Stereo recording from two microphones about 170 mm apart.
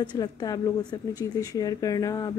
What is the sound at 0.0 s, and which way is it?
Speech, 25° left (ahead or behind).